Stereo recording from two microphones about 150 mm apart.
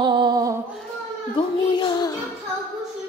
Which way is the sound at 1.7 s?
30° left (ahead or behind).